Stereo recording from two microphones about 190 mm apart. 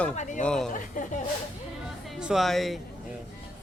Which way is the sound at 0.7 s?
45° left (ahead or behind).